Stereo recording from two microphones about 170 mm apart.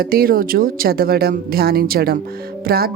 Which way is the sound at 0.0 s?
60° right (ahead or behind).